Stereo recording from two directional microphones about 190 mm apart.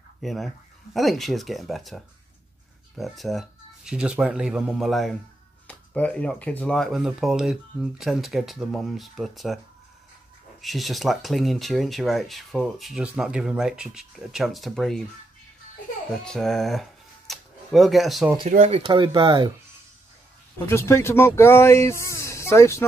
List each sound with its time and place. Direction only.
0.2 s speech: centre (ahead or behind)
10.6 s speech: centre (ahead or behind)
16.3 s speech: centre (ahead or behind)
17.3 s a sound: centre (ahead or behind)
18.7 s speech: 25° right (ahead or behind)
20.5 s speech: 15° left (ahead or behind)